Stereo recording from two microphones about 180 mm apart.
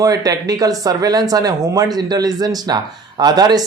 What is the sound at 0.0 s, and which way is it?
Speech, 20° right (ahead or behind).